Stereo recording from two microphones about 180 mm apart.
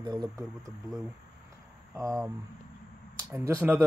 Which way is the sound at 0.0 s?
25° right (ahead or behind).